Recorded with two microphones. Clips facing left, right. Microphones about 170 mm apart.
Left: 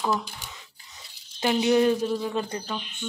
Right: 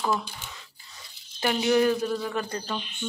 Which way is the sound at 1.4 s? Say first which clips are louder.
Left 2 dB; 20° left (ahead or behind).